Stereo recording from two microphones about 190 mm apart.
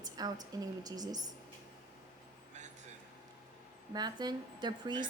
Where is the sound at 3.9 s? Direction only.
20° right (ahead or behind).